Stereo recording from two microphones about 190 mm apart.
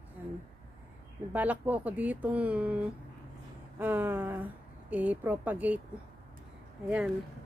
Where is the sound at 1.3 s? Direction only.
10° right (ahead or behind).